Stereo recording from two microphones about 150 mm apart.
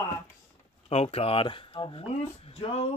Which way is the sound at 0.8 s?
45° left (ahead or behind).